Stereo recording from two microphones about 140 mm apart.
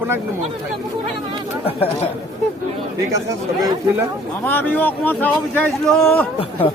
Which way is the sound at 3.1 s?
25° right (ahead or behind).